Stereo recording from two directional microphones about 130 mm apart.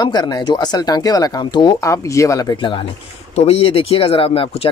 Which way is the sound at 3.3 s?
50° left (ahead or behind).